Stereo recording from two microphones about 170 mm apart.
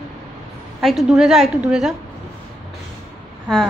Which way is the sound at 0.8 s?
Centre (ahead or behind).